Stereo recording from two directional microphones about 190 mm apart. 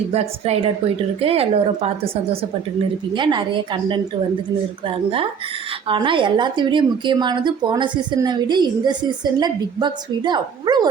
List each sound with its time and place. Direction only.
0.1 s speech: 35° right (ahead or behind)
3.2 s a woman's voice: 25° right (ahead or behind)
5.9 s a woman's voice: 25° right (ahead or behind)